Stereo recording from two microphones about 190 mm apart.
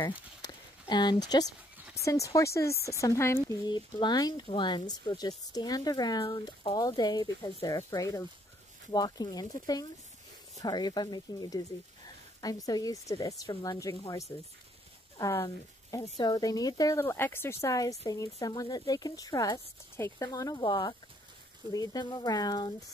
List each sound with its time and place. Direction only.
0.8 s speech: 20° left (ahead or behind)